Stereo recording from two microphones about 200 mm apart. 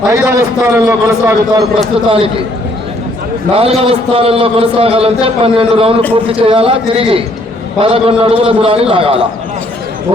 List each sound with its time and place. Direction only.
0.1 s a man's voice: 15° right (ahead or behind)
2.0 s a man's voice: 30° right (ahead or behind)
3.5 s a man's voice: 30° right (ahead or behind)